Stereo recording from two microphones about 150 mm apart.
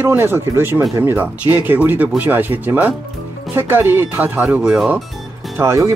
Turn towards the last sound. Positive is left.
turn(degrees=-20)  # may be behind; listen again after turning